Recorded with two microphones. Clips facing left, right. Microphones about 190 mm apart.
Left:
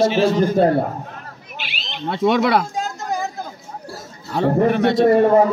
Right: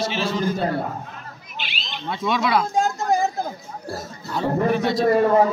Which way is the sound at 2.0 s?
60° left (ahead or behind).